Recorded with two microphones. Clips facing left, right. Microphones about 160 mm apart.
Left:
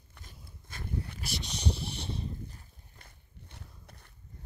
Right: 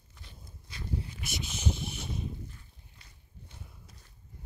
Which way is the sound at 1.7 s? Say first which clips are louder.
Even; 35° left (ahead or behind).